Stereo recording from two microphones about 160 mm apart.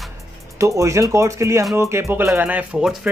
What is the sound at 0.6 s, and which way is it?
Speech, 20° right (ahead or behind).